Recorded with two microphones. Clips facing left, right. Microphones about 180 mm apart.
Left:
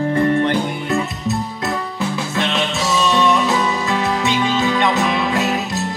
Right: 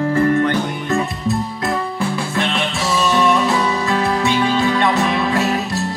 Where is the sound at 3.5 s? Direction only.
15° left (ahead or behind).